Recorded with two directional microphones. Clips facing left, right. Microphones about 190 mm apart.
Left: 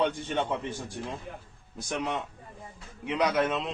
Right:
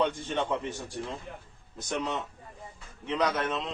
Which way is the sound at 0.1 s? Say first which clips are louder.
Even; 10° left (ahead or behind).